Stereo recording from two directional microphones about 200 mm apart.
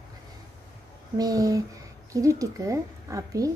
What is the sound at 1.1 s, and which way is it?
A woman's voice, 20° right (ahead or behind).